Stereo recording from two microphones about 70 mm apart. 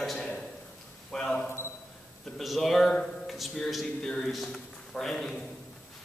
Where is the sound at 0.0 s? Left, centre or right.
Centre.